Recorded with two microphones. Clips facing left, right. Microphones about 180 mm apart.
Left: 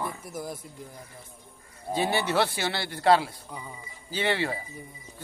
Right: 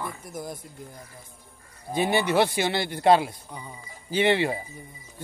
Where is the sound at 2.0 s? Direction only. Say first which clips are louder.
Right 3 dB; 15° right (ahead or behind).